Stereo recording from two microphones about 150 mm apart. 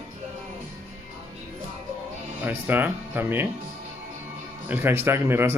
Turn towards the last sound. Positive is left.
turn(degrees=-15)  # may be behind; listen again after turning